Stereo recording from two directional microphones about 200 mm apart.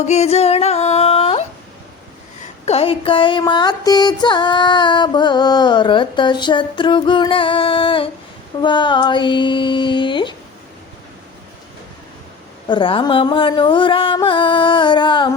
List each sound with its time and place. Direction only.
0.1 s music: 30° left (ahead or behind)
2.6 s music: 30° left (ahead or behind)
12.6 s music: 25° left (ahead or behind)